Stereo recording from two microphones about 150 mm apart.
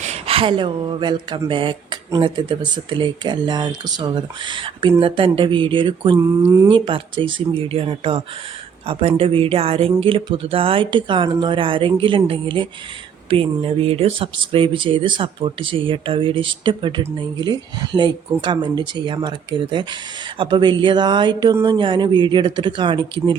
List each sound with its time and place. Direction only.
0.0 s speech: 45° right (ahead or behind)
6.1 s a sound: 20° right (ahead or behind)
6.7 s speech: 35° right (ahead or behind)